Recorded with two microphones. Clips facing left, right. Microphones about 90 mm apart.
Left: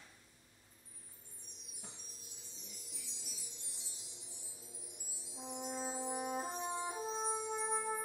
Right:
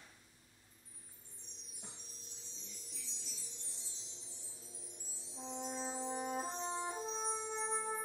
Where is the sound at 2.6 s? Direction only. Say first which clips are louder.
Left 1 dB; 15° left (ahead or behind).